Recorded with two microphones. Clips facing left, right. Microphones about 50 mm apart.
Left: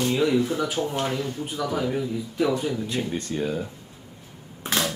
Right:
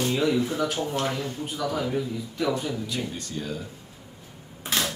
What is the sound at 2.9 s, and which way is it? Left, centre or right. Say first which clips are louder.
Speech: left 4 dB; left.